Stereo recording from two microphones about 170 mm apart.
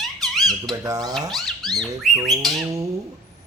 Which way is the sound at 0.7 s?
20° right (ahead or behind).